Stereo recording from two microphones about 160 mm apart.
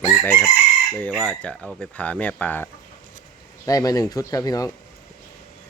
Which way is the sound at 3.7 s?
25° left (ahead or behind).